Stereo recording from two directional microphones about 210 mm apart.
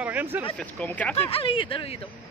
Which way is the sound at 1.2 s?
25° left (ahead or behind).